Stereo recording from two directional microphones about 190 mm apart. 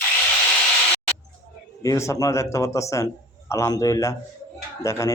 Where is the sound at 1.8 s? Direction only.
15° left (ahead or behind).